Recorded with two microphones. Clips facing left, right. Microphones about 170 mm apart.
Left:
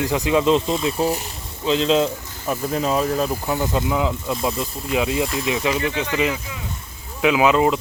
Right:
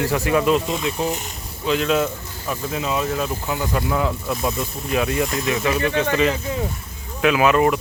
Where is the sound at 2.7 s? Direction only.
35° left (ahead or behind).